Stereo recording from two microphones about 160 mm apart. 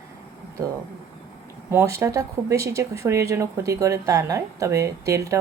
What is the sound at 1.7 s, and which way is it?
Speech, 15° right (ahead or behind).